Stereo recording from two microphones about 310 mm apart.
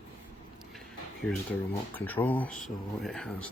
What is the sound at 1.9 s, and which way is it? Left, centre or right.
Speech, centre.